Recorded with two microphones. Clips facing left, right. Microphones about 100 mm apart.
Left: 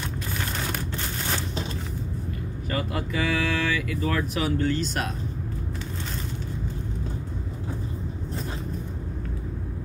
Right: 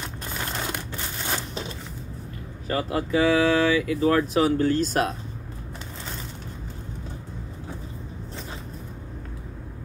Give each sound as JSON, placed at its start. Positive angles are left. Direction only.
{"t": 2.7, "sound": "speech", "side_deg": -35}